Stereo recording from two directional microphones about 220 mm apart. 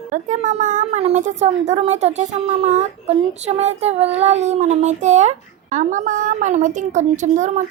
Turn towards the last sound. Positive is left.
turn(degrees=-35)  # may be behind; listen again after turning